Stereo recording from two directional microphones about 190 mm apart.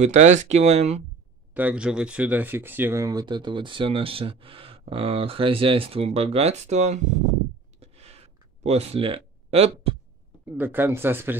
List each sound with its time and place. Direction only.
0.0 s speech: 35° right (ahead or behind)
1.5 s speech: 10° right (ahead or behind); by 7.2 s 40° right (ahead or behind)
7.8 s a sound: 35° right (ahead or behind)
8.6 s speech: 35° right (ahead or behind)
10.4 s speech: 10° right (ahead or behind)